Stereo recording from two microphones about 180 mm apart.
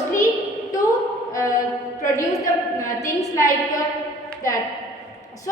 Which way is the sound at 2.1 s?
20° left (ahead or behind).